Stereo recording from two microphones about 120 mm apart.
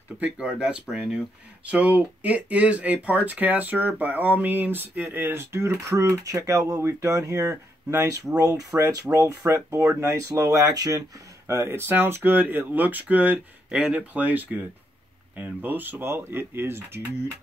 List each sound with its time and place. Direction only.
0.2 s speech: 10° right (ahead or behind)